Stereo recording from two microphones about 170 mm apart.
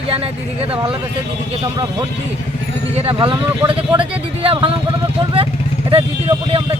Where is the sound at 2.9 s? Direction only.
30° right (ahead or behind).